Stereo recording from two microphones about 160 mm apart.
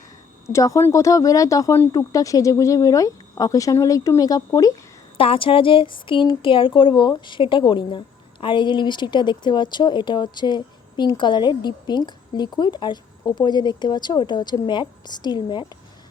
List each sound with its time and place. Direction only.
0.4 s speech: 20° left (ahead or behind)
5.1 s speech: 35° left (ahead or behind)